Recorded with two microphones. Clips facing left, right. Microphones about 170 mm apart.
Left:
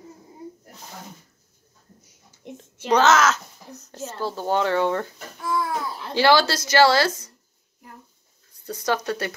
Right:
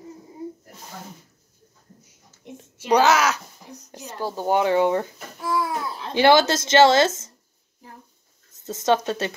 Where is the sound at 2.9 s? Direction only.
10° right (ahead or behind).